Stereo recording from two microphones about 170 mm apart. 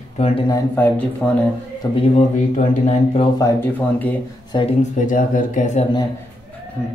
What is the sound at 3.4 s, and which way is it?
Speech, 10° left (ahead or behind).